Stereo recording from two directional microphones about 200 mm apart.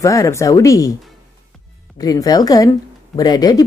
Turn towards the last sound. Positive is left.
turn(degrees=20)  # may be behind; listen again after turning